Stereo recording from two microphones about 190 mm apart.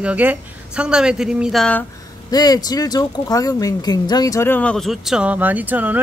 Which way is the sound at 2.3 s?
20° left (ahead or behind).